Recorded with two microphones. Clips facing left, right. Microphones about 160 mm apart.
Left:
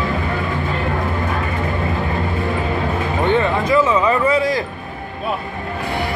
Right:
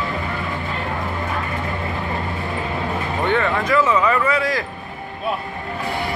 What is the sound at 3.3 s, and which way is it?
Speech, 20° left (ahead or behind).